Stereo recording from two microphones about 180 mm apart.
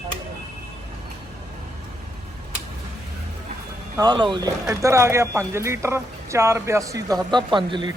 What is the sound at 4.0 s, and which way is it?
Speech, 25° right (ahead or behind).